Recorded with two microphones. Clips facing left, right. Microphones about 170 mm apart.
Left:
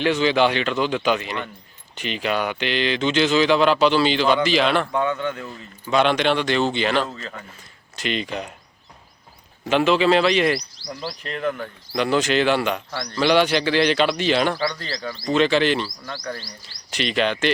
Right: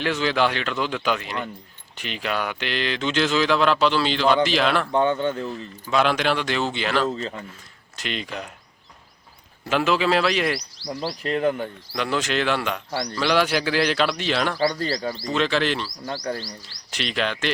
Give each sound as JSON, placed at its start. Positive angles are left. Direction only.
{"t": 0.0, "sound": "speech", "side_deg": 0}
{"t": 4.9, "sound": "speech", "side_deg": -30}
{"t": 5.5, "sound": "speech", "side_deg": 0}
{"t": 7.9, "sound": "speech", "side_deg": 0}
{"t": 9.6, "sound": "speech", "side_deg": 0}
{"t": 10.8, "sound": "speech", "side_deg": -35}
{"t": 11.9, "sound": "speech", "side_deg": 0}
{"t": 14.6, "sound": "speech", "side_deg": -35}
{"t": 15.3, "sound": "speech", "side_deg": 0}
{"t": 16.0, "sound": "speech", "side_deg": -30}
{"t": 16.6, "sound": "speech", "side_deg": 0}